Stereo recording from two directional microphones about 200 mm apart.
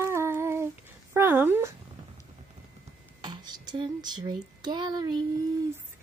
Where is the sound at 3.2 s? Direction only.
20° right (ahead or behind).